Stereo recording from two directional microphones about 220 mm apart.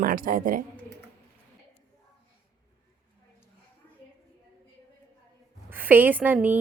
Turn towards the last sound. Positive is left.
turn(degrees=-5)  # may be behind; listen again after turning